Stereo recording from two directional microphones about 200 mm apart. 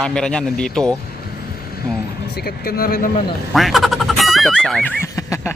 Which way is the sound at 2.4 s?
50° left (ahead or behind).